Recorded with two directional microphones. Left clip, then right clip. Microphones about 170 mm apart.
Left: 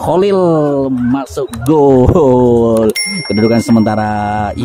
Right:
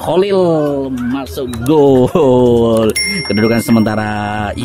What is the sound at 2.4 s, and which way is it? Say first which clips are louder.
Speech: left 1 dB; 20° left (ahead or behind).